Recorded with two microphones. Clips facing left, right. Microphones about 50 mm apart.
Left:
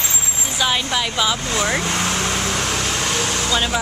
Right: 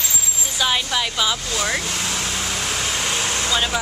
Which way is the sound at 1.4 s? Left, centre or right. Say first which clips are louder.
Left 3 dB; left.